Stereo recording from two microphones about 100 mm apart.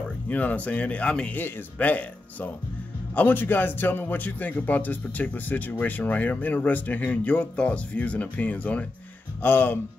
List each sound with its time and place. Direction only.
0.3 s speech: 15° left (ahead or behind)